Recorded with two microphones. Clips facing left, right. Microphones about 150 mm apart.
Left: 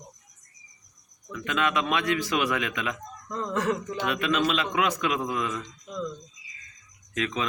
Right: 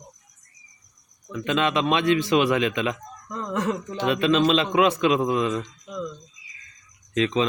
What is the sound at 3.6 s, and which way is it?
A man's voice, 25° right (ahead or behind).